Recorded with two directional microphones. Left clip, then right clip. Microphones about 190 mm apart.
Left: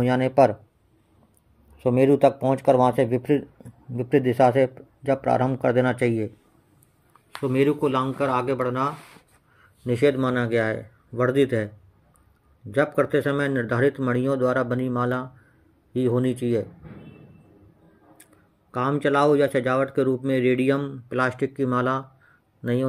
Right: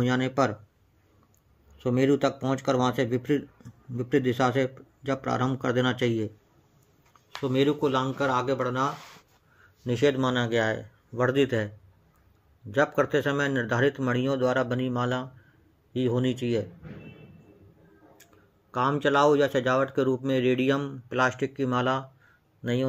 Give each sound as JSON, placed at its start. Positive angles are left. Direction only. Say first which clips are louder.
{"t": 1.8, "sound": "speech", "louder": "left 6 dB", "side_deg": 20}
{"t": 7.3, "sound": "speech", "louder": "left 3 dB", "side_deg": 25}
{"t": 12.7, "sound": "speech", "louder": "left 2 dB", "side_deg": 25}
{"t": 18.2, "sound": "speech", "louder": "left 1 dB", "side_deg": 30}